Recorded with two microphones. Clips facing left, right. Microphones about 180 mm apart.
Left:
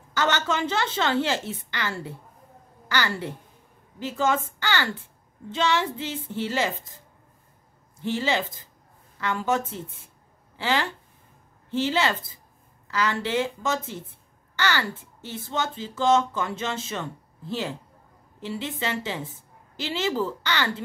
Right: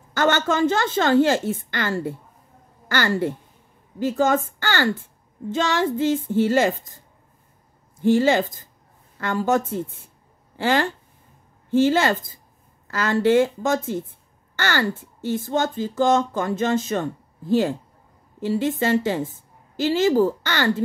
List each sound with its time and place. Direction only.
0.1 s speech: 50° right (ahead or behind)
8.0 s speech: 50° right (ahead or behind)